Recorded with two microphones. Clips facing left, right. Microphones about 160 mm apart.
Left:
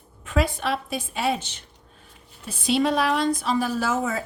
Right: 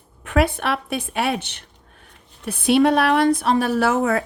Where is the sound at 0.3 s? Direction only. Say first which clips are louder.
Right 4 dB; 60° right (ahead or behind).